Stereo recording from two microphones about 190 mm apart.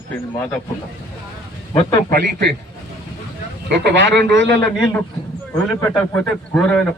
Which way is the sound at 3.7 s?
65° right (ahead or behind).